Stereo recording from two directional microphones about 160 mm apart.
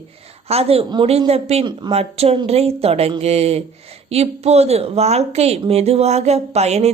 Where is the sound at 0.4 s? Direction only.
40° right (ahead or behind).